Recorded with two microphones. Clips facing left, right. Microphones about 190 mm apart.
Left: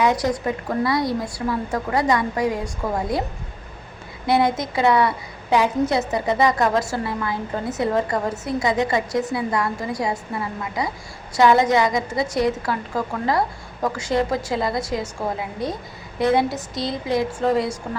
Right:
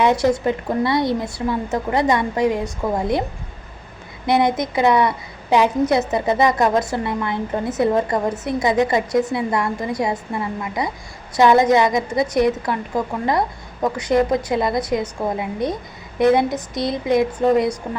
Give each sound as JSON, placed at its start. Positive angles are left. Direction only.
{"t": 0.0, "sound": "a woman's voice", "side_deg": -25}
{"t": 4.3, "sound": "a woman's voice", "side_deg": -20}
{"t": 11.3, "sound": "a woman's voice", "side_deg": -20}
{"t": 13.8, "sound": "a woman's voice", "side_deg": -20}